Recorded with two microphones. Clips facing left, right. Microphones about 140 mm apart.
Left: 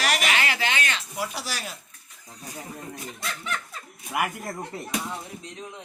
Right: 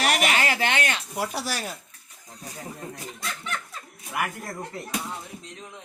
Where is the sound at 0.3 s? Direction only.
40° right (ahead or behind).